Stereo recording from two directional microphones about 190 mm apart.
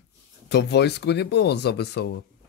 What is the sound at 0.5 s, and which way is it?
Speech, 60° left (ahead or behind).